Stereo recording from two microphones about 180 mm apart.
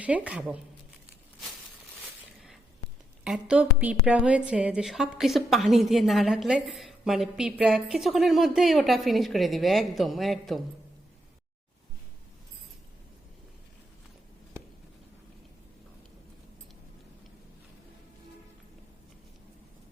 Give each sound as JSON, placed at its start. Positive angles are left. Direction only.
{"t": 0.0, "sound": "speech", "side_deg": -5}
{"t": 3.2, "sound": "a woman's voice", "side_deg": -5}